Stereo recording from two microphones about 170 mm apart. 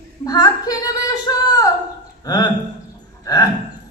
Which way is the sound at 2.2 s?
25° left (ahead or behind).